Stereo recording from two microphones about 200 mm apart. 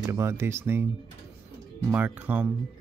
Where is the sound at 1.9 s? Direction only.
5° right (ahead or behind).